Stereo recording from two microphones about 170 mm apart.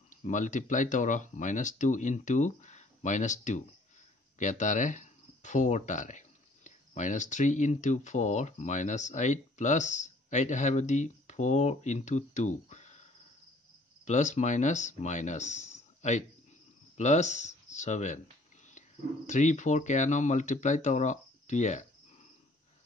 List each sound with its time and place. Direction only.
0.1 s speech: 50° left (ahead or behind)
14.0 s speech: 45° left (ahead or behind)